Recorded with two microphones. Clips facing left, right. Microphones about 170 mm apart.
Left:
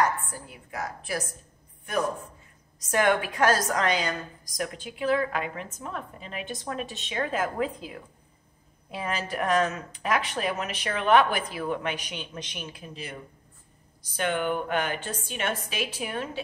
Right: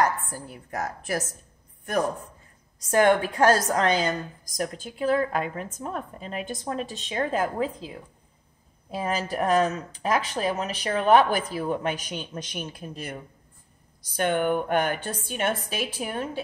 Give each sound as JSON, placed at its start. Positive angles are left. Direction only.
{"t": 0.0, "sound": "a woman's voice", "side_deg": -40}
{"t": 2.9, "sound": "a woman's voice", "side_deg": -30}
{"t": 4.6, "sound": "a woman's voice", "side_deg": -40}
{"t": 8.9, "sound": "a woman's voice", "side_deg": -40}